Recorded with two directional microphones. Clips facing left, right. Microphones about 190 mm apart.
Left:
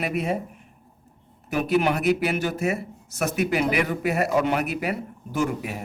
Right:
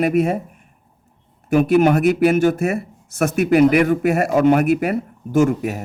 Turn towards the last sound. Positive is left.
turn(degrees=-45)  # may be behind; listen again after turning